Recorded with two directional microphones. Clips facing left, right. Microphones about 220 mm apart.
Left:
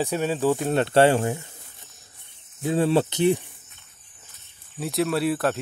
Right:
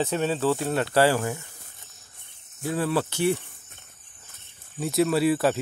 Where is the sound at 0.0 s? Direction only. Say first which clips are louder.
Left 1 dB; 10° left (ahead or behind).